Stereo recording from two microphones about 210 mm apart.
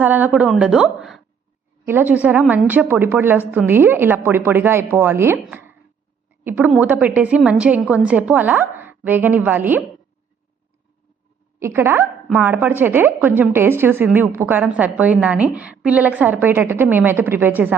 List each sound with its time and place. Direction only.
0.0 s a woman's voice: 10° right (ahead or behind)
11.6 s a woman's voice: 10° right (ahead or behind)